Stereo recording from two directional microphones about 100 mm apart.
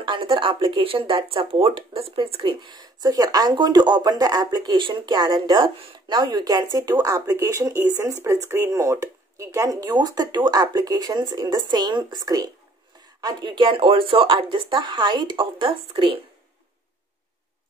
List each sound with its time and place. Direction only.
0.0 s speech: 60° right (ahead or behind)